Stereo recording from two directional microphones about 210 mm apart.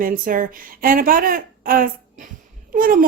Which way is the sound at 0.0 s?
40° right (ahead or behind).